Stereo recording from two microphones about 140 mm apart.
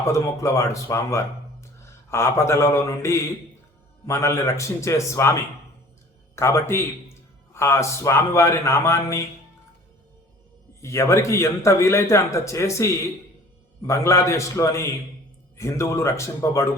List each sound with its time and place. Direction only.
0.0 s a man's voice: 20° left (ahead or behind)
6.3 s a man's voice: 20° left (ahead or behind)
10.8 s a man's voice: 20° left (ahead or behind)